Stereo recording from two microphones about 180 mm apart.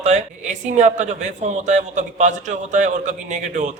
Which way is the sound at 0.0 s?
40° right (ahead or behind).